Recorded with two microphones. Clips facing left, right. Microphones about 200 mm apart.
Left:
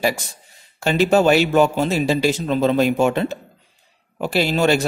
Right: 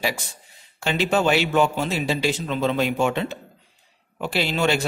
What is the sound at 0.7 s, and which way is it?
A man's voice, 45° left (ahead or behind).